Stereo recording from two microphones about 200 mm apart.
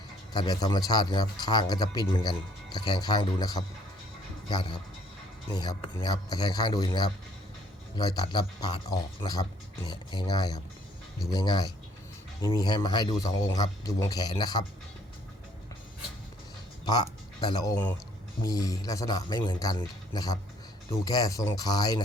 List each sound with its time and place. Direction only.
0.3 s speech: 20° left (ahead or behind)
16.8 s speech: 20° left (ahead or behind)